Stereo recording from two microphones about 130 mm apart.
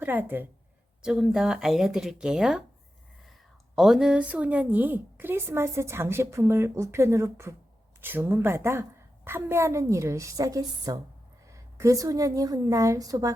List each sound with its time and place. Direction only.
0.0 s a woman's voice: 15° right (ahead or behind)
1.0 s speech: 5° right (ahead or behind)
3.8 s a woman's voice: 5° right (ahead or behind); by 13.3 s 30° right (ahead or behind)